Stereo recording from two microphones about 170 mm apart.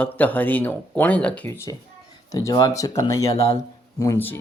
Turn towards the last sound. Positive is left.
turn(degrees=15)  # may be behind; listen again after turning